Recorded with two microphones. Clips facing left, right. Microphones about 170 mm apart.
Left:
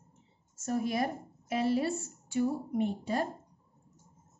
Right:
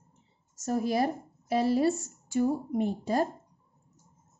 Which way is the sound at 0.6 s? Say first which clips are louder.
Right 4 dB; 40° right (ahead or behind).